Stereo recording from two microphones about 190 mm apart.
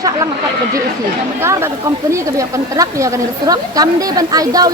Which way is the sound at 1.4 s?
15° right (ahead or behind).